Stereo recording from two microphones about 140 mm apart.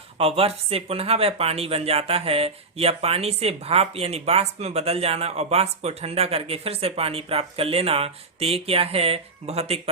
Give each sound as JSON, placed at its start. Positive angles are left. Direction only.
{"t": 0.2, "sound": "speech", "side_deg": -45}